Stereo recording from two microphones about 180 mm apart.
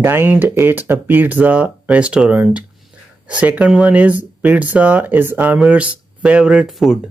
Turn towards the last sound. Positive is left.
turn(degrees=0)  # may be behind; listen again after turning